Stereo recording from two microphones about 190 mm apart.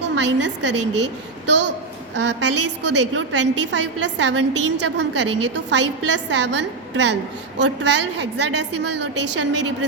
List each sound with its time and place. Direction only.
0.2 s a woman's voice: 70° right (ahead or behind)